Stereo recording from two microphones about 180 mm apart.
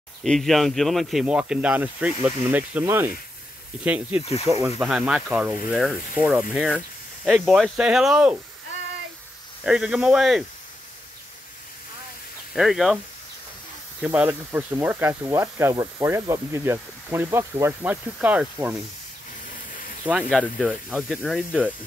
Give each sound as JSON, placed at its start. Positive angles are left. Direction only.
{"t": 0.2, "sound": "speech", "side_deg": 0}
{"t": 4.8, "sound": "speech", "side_deg": -5}
{"t": 9.7, "sound": "speech", "side_deg": -5}
{"t": 12.5, "sound": "speech", "side_deg": 0}
{"t": 14.0, "sound": "speech", "side_deg": -10}
{"t": 19.5, "sound": "a sound", "side_deg": 50}
{"t": 20.1, "sound": "speech", "side_deg": -5}